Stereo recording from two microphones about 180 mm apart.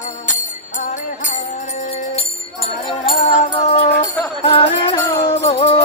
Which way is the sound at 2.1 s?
35° left (ahead or behind).